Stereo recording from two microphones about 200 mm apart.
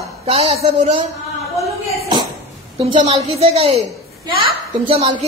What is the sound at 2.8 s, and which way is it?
A woman's voice, 30° right (ahead or behind).